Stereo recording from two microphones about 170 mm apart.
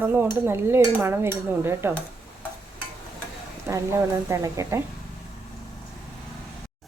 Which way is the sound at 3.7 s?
15° right (ahead or behind).